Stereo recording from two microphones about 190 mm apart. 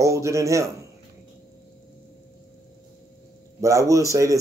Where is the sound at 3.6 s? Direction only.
15° right (ahead or behind).